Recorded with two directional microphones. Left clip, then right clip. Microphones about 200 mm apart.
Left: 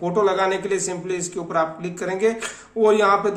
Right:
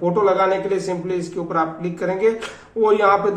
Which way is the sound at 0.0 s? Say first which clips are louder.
Right 3 dB; 30° left (ahead or behind).